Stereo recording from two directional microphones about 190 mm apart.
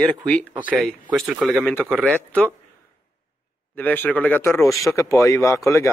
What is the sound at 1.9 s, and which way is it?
Speech, 10° right (ahead or behind).